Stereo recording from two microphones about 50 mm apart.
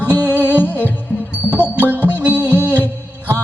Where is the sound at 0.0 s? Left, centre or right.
Left.